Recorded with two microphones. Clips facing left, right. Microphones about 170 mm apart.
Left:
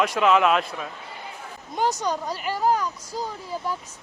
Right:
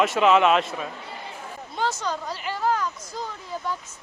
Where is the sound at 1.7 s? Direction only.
15° left (ahead or behind).